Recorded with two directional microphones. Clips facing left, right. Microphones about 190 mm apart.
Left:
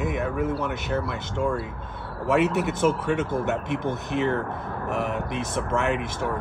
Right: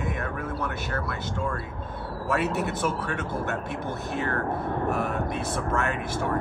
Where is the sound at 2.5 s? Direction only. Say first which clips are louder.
Left 4 dB; 20° left (ahead or behind).